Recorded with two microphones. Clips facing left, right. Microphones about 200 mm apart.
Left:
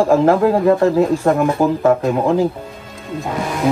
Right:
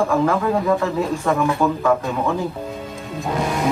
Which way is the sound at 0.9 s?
45° left (ahead or behind).